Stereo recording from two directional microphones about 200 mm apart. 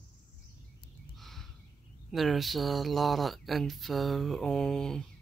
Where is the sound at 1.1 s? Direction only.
Centre (ahead or behind).